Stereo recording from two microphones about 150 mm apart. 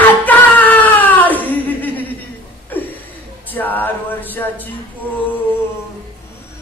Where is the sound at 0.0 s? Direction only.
10° left (ahead or behind).